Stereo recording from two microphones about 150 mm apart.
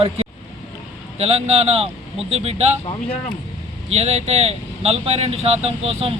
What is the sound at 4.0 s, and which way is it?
Speech, 45° right (ahead or behind).